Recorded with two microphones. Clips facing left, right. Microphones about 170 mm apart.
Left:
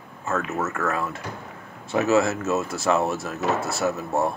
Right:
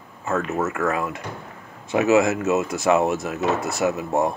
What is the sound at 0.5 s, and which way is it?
Speech, 15° right (ahead or behind).